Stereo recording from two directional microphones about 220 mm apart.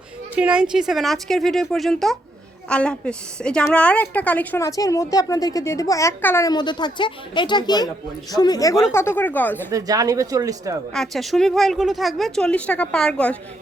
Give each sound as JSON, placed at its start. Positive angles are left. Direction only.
{"t": 0.3, "sound": "a woman's voice", "side_deg": -5}
{"t": 9.7, "sound": "speech", "side_deg": -15}
{"t": 10.9, "sound": "speech", "side_deg": 0}